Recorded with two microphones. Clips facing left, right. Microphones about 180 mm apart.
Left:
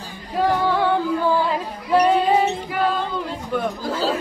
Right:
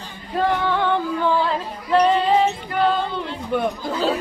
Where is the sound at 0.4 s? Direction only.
10° left (ahead or behind).